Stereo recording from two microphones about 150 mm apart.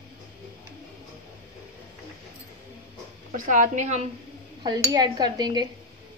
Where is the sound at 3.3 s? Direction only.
60° right (ahead or behind).